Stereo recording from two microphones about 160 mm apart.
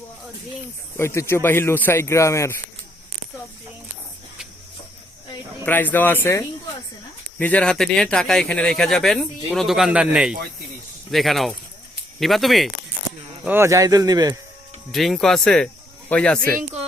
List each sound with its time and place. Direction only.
0.9 s speech: 15° left (ahead or behind)
5.6 s speech: 10° left (ahead or behind)
13.4 s speech: 15° right (ahead or behind)
14.9 s speech: centre (ahead or behind)